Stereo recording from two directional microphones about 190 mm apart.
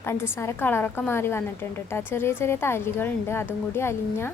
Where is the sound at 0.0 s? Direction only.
15° left (ahead or behind).